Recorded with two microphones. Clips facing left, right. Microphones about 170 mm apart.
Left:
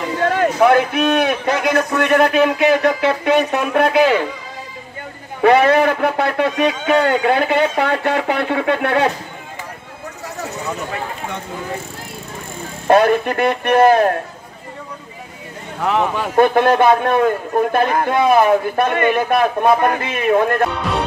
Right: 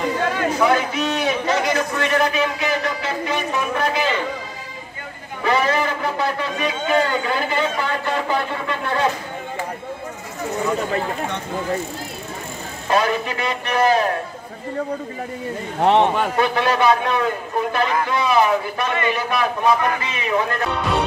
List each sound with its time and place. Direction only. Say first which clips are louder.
0.7 s speech: left 6 dB; 60° left (ahead or behind)
5.4 s speech: left 8 dB; 60° left (ahead or behind)
12.8 s speech: left 7 dB; 55° left (ahead or behind)
15.8 s a man's voice: right 3 dB; 30° right (ahead or behind)
16.3 s a man's voice: left 10 dB; 50° left (ahead or behind)